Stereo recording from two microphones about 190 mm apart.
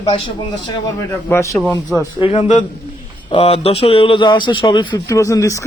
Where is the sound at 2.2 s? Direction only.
30° left (ahead or behind).